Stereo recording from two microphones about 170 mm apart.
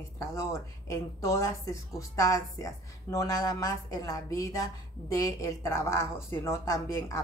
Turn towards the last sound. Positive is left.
turn(degrees=20)  # may be behind; listen again after turning